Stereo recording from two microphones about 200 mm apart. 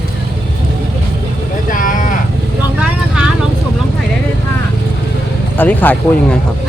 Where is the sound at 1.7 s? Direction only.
40° left (ahead or behind).